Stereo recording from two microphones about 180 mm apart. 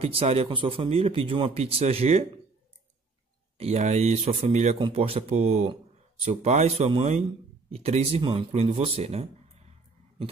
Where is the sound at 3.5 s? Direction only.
35° right (ahead or behind).